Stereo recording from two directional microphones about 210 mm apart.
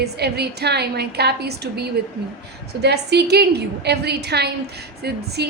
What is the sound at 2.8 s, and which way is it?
A woman's voice, 55° right (ahead or behind).